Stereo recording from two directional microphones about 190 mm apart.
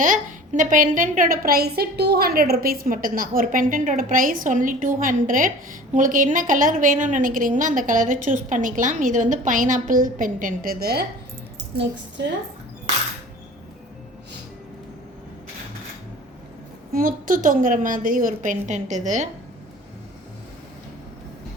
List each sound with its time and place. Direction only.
0.0 s a woman's voice: 40° right (ahead or behind)
16.9 s a woman's voice: 50° right (ahead or behind)